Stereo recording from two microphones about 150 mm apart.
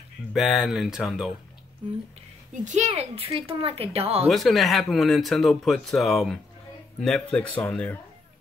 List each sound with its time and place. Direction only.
0.3 s speech: centre (ahead or behind)
2.6 s speech: 50° right (ahead or behind)
4.3 s speech: centre (ahead or behind)